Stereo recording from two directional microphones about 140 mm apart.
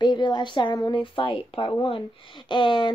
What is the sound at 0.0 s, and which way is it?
Speech, 35° left (ahead or behind).